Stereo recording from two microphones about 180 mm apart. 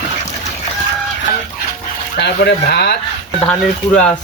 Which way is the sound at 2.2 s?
70° left (ahead or behind).